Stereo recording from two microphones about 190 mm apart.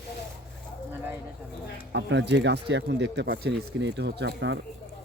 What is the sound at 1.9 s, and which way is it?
Speech, 70° right (ahead or behind).